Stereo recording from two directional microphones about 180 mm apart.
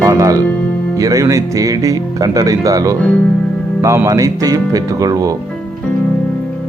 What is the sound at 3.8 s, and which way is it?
Speech, 15° right (ahead or behind).